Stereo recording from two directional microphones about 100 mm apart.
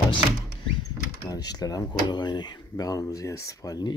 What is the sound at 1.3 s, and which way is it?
Speech, 40° left (ahead or behind).